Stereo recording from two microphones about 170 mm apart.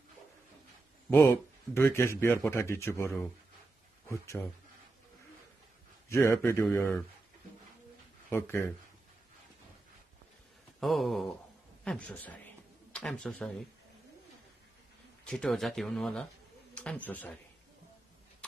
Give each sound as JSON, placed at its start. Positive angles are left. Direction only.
{"t": 1.1, "sound": "speech", "side_deg": 15}
{"t": 6.0, "sound": "speech", "side_deg": 15}
{"t": 8.3, "sound": "speech", "side_deg": 15}
{"t": 10.8, "sound": "speech", "side_deg": 0}
{"t": 15.2, "sound": "speech", "side_deg": 5}